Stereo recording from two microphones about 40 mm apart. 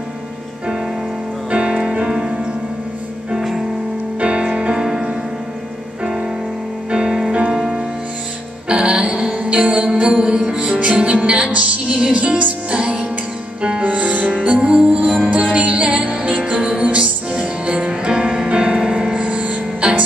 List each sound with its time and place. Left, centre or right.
1.5 s music: right
3.3 s music: centre
4.2 s music: right
6.9 s music: centre
8.6 s music: centre
9.0 s music: right
12.7 s music: right
14.4 s music: right
15.0 s music: right